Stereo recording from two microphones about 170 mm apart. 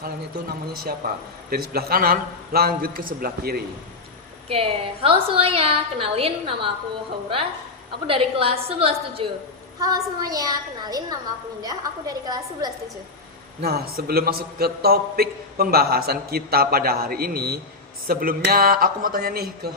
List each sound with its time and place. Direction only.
0.7 s a man's voice: 60° right (ahead or behind)
4.4 s a woman's voice: 35° right (ahead or behind)
8.0 s a woman's voice: 35° right (ahead or behind)
9.8 s a woman's voice: 20° right (ahead or behind)
13.6 s a man's voice: 65° right (ahead or behind)